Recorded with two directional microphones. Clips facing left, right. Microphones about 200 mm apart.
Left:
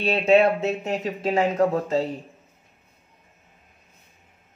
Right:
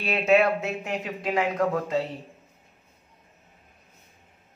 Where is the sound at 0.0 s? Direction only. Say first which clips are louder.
Left 3 dB; 30° left (ahead or behind).